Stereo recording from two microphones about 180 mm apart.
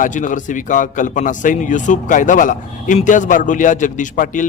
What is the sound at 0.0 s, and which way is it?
A man's voice, 45° left (ahead or behind).